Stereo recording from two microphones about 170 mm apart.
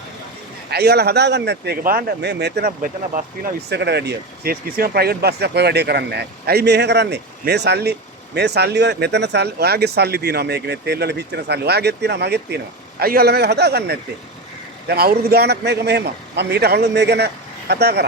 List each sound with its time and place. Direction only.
0.7 s speech: 70° right (ahead or behind)
3.7 s speech: 80° right
13.0 s speech: 65° right (ahead or behind)